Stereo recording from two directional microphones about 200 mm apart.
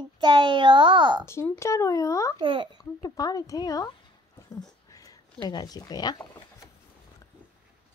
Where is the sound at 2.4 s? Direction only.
25° right (ahead or behind).